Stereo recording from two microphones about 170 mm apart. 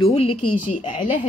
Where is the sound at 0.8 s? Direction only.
50° left (ahead or behind).